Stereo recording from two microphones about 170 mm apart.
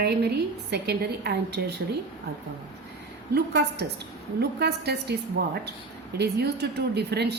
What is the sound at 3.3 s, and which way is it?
Speech, 75° right (ahead or behind).